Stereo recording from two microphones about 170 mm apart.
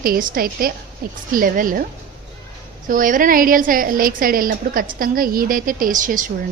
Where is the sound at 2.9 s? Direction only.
50° right (ahead or behind).